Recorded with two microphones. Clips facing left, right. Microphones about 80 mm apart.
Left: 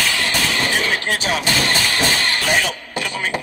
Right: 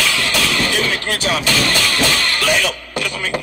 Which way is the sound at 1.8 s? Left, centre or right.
Right.